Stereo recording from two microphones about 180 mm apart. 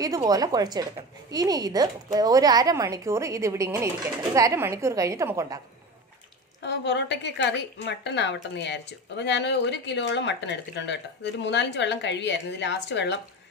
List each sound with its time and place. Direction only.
0.0 s a woman's voice: 20° right (ahead or behind)
6.6 s a woman's voice: 75° left (ahead or behind)